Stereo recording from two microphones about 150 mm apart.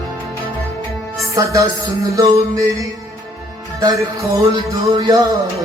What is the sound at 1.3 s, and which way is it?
Music, 20° right (ahead or behind).